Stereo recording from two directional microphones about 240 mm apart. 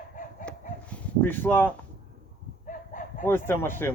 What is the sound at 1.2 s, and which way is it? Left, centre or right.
Speech, centre.